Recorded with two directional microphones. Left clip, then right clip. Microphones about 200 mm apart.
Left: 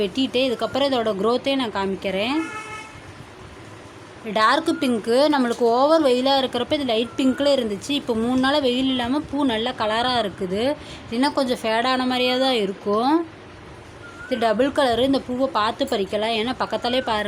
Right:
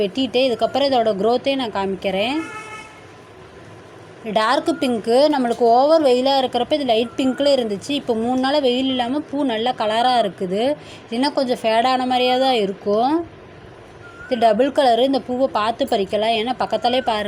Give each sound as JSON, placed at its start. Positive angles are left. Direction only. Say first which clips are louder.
{"t": 0.0, "sound": "speech", "louder": "right 3 dB", "side_deg": -5}
{"t": 4.3, "sound": "speech", "louder": "right 1 dB", "side_deg": -10}
{"t": 14.3, "sound": "speech", "louder": "right 4 dB", "side_deg": -5}